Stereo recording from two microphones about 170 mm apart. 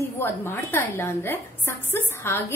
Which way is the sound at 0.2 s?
10° left (ahead or behind).